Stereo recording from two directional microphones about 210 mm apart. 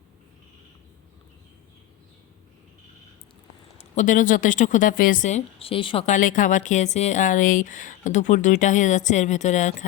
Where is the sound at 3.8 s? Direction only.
35° left (ahead or behind).